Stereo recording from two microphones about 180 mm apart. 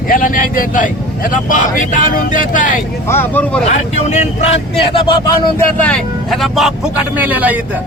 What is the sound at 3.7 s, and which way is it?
Speech, 40° left (ahead or behind).